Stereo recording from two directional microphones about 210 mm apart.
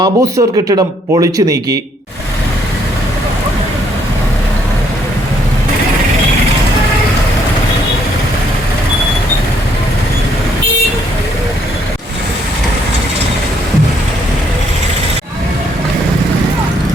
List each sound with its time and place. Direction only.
0.0 s speech: 15° right (ahead or behind)